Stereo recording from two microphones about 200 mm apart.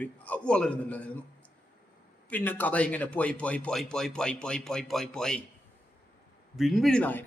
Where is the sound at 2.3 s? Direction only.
10° left (ahead or behind).